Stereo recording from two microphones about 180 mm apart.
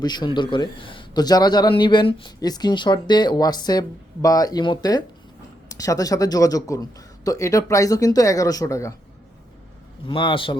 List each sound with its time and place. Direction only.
0.0 s speech: 25° left (ahead or behind)
10.1 s speech: 30° left (ahead or behind)